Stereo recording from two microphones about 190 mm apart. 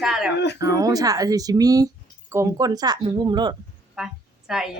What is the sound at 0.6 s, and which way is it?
Speech, 20° right (ahead or behind).